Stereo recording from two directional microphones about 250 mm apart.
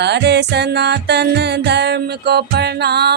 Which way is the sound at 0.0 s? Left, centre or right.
Right.